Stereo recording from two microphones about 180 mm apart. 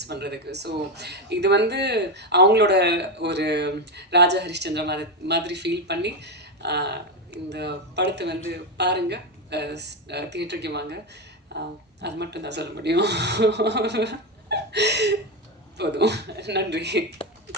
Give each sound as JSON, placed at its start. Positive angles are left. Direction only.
{"t": 0.0, "sound": "speech", "side_deg": -65}